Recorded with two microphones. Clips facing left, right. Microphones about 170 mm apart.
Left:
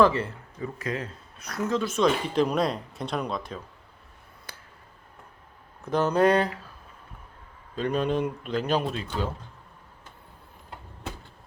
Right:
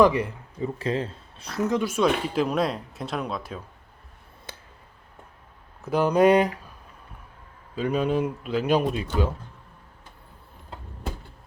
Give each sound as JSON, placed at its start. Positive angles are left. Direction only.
{"t": 0.0, "sound": "speech", "side_deg": -15}
{"t": 0.8, "sound": "speech", "side_deg": -30}
{"t": 1.7, "sound": "speech", "side_deg": -10}
{"t": 4.5, "sound": "a sound", "side_deg": -25}
{"t": 5.8, "sound": "speech", "side_deg": -10}
{"t": 7.8, "sound": "speech", "side_deg": -5}